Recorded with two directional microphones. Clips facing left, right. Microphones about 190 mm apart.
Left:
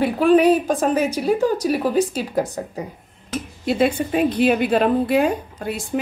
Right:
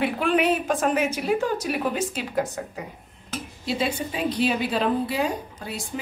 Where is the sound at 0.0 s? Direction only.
40° left (ahead or behind).